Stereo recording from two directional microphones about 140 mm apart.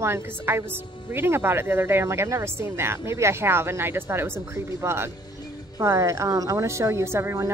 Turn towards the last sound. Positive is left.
turn(degrees=-20)  # may be behind; listen again after turning